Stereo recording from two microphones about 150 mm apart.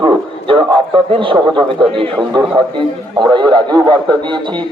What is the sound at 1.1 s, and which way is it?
A man's voice, 35° right (ahead or behind).